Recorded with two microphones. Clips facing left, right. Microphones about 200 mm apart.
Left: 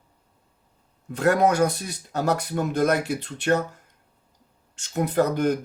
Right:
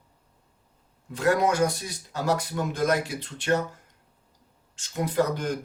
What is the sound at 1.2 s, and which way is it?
Speech, 60° left (ahead or behind).